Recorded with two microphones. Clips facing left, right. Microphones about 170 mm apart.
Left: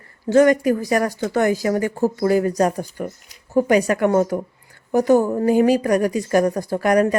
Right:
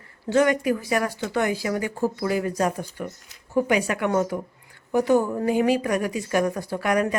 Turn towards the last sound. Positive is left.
turn(degrees=40)  # may be behind; listen again after turning